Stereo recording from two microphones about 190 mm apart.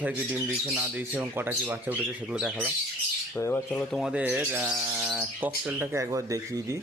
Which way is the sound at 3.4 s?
15° left (ahead or behind).